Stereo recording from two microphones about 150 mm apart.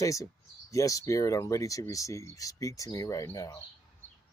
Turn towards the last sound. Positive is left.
turn(degrees=20)  # may be behind; listen again after turning